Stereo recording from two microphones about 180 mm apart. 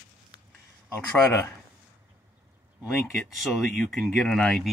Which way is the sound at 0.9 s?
10° left (ahead or behind).